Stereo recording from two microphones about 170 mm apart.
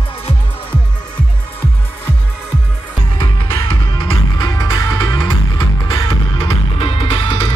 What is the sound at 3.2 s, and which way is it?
Music, 25° left (ahead or behind).